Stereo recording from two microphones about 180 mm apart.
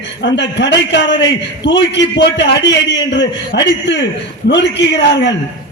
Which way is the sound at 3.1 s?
75° left (ahead or behind).